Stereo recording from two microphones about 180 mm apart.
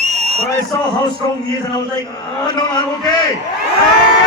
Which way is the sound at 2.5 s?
25° left (ahead or behind).